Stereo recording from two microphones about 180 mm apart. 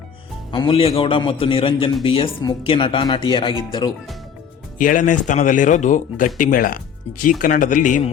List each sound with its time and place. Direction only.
0.5 s a man's voice: 30° left (ahead or behind)
4.8 s speech: 45° left (ahead or behind)